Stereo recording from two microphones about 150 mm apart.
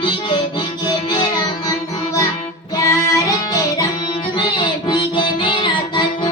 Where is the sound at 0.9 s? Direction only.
30° left (ahead or behind).